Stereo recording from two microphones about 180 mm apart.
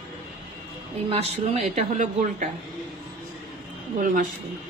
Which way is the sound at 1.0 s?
35° right (ahead or behind).